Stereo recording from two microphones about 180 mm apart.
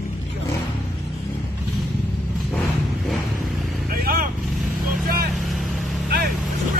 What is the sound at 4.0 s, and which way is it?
Vehicle, 55° right (ahead or behind).